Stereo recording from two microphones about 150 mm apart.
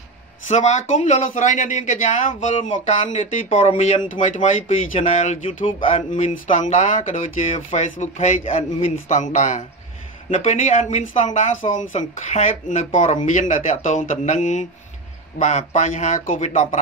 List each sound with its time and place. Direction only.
0.5 s speech: 50° left (ahead or behind)